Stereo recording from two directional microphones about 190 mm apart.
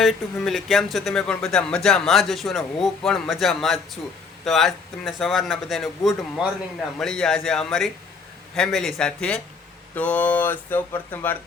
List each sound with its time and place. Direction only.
0.0 s speech: centre (ahead or behind)